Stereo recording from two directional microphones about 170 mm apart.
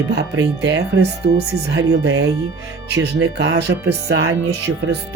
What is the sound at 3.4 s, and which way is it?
Speech, 75° right (ahead or behind).